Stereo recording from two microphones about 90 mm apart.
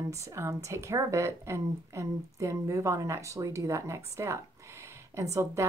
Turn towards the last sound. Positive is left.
turn(degrees=-35)  # may be behind; listen again after turning